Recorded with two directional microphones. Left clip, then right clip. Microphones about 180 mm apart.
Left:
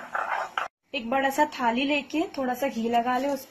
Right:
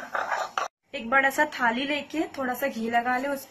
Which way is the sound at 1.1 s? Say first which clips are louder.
Right 2 dB; 25° left (ahead or behind).